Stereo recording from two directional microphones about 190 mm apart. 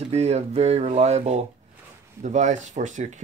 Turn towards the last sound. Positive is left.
turn(degrees=-40)  # may be behind; listen again after turning